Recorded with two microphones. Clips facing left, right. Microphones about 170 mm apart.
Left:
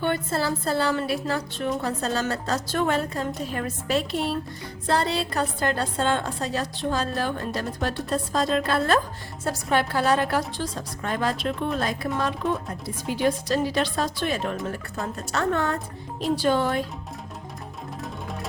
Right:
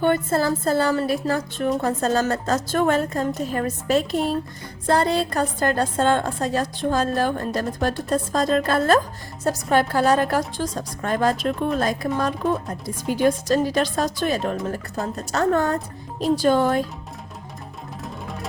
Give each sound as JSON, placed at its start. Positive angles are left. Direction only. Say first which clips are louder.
{"t": 0.0, "sound": "a woman's voice", "louder": "right 5 dB", "side_deg": -45}